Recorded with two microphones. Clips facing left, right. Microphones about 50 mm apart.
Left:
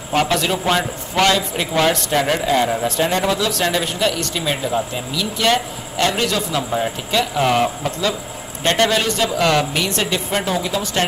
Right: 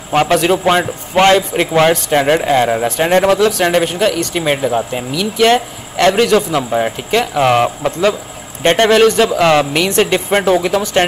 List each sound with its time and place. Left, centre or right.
0.1 s speech: right
3.6 s speech: right
7.5 s speech: right
8.9 s speech: right
9.4 s speech: right
9.8 s speech: right
10.8 s speech: right